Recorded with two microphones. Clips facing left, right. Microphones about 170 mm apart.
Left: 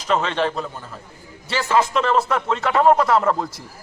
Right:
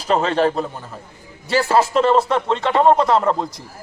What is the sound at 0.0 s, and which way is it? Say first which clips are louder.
A man's voice: right 4 dB; 35° right (ahead or behind).